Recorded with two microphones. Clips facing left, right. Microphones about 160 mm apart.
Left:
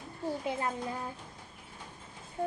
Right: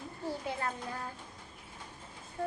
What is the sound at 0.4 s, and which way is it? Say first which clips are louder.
Speech: left 3 dB; 20° left (ahead or behind).